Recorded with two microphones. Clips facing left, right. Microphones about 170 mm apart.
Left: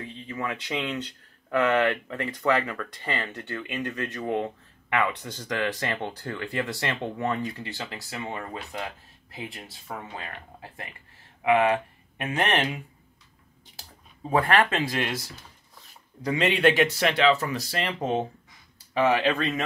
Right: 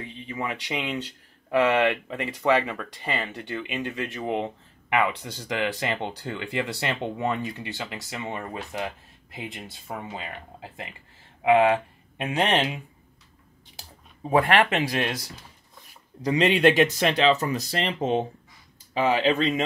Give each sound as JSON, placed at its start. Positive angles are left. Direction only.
{"t": 0.0, "sound": "speech", "side_deg": -15}
{"t": 14.3, "sound": "speech", "side_deg": -20}
{"t": 16.3, "sound": "speech", "side_deg": -20}